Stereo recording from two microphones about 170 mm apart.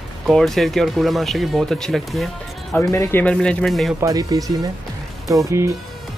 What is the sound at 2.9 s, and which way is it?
Speech, 15° left (ahead or behind).